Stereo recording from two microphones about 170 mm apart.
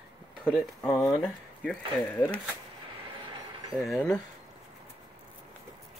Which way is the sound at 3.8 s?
5° left (ahead or behind).